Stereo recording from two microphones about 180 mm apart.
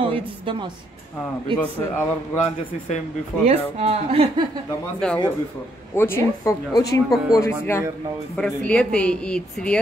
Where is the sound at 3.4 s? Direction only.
35° right (ahead or behind).